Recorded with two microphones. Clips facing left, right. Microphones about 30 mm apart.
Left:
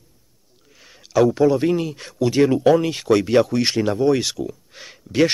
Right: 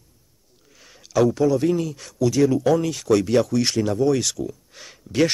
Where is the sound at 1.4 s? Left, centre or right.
Left.